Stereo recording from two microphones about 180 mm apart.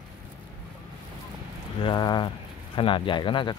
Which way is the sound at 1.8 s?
25° left (ahead or behind).